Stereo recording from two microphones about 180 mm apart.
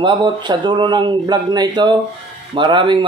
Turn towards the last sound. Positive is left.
turn(degrees=-25)  # may be behind; listen again after turning